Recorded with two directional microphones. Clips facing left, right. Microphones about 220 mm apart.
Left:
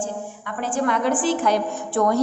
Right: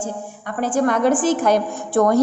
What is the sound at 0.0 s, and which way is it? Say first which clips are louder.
A woman's voice: right 1 dB; 40° right (ahead or behind).